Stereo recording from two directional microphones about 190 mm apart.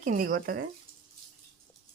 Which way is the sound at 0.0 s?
45° right (ahead or behind).